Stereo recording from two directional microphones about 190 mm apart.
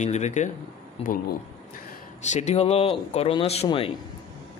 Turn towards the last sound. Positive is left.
turn(degrees=30)  # may be behind; listen again after turning